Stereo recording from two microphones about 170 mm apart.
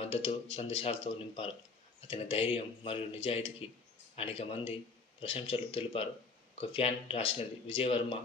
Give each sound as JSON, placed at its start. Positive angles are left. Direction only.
{"t": 0.1, "sound": "speech", "side_deg": 30}